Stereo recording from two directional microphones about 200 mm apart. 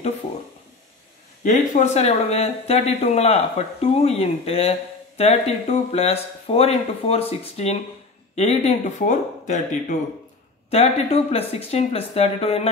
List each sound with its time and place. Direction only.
1.4 s speech: 40° left (ahead or behind)